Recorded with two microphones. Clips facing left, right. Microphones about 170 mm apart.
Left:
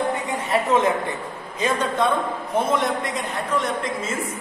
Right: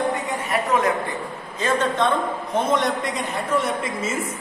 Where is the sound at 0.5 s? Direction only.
25° left (ahead or behind).